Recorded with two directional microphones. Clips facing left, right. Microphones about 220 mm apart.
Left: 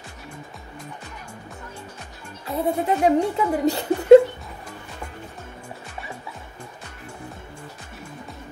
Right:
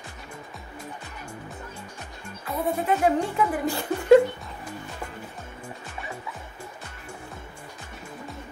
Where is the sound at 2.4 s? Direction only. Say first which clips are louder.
Left 3 dB; 25° left (ahead or behind).